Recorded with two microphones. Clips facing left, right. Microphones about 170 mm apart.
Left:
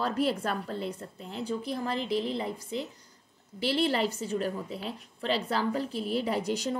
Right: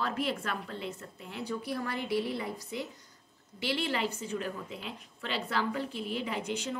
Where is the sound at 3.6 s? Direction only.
35° left (ahead or behind).